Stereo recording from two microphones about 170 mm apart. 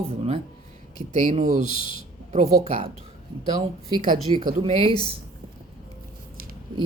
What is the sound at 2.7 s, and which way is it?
Speech, 35° right (ahead or behind).